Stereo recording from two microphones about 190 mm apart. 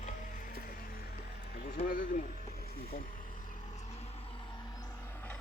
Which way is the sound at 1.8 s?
45° left (ahead or behind).